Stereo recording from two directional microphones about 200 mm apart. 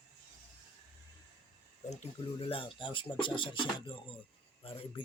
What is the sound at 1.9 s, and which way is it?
Speech, 30° left (ahead or behind).